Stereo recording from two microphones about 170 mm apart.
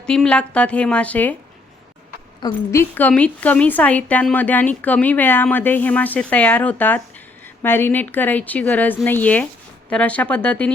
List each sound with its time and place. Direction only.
0.0 s speech: 5° left (ahead or behind)
2.4 s a woman's voice: 25° left (ahead or behind)
2.9 s speech: 10° left (ahead or behind)